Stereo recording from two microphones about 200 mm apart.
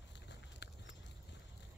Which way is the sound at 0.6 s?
60° left (ahead or behind).